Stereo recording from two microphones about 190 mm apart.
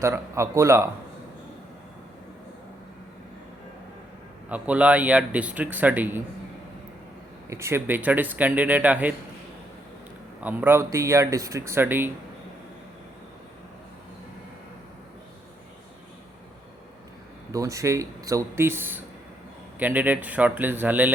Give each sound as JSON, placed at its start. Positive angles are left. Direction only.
{"t": 0.0, "sound": "speech", "side_deg": -15}
{"t": 4.4, "sound": "speech", "side_deg": -5}
{"t": 7.5, "sound": "speech", "side_deg": -15}
{"t": 10.4, "sound": "speech", "side_deg": -10}
{"t": 17.5, "sound": "speech", "side_deg": -15}